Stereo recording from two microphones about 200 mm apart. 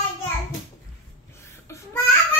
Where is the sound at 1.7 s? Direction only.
10° left (ahead or behind).